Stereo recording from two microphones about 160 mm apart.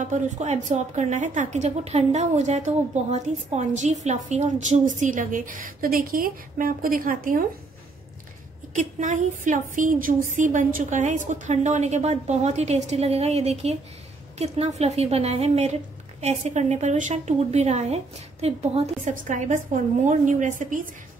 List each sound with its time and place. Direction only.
0.0 s speech: 45° right (ahead or behind)
8.7 s a woman's voice: 50° right (ahead or behind)